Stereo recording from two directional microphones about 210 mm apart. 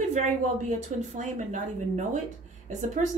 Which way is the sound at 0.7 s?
35° right (ahead or behind).